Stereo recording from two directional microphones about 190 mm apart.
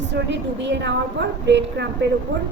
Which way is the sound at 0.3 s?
70° right (ahead or behind).